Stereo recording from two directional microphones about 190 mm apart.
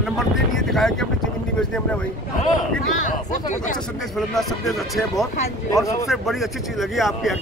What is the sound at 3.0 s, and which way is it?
Speech, 45° left (ahead or behind).